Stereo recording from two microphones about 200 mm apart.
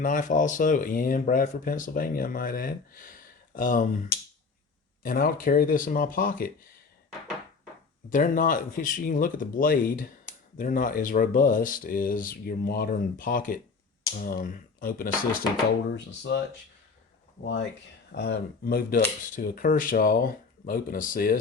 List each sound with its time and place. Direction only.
0.0 s speech: 40° left (ahead or behind)
5.0 s speech: 45° left (ahead or behind)
8.1 s speech: 40° left (ahead or behind)
15.9 s speech: 60° left (ahead or behind)
17.4 s speech: 60° left (ahead or behind); by 21.3 s 45° left (ahead or behind)